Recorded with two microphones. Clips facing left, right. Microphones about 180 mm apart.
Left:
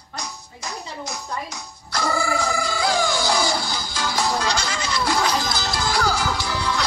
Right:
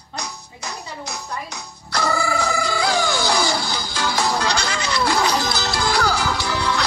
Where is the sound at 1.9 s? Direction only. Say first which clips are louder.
Right 1 dB; 70° right (ahead or behind).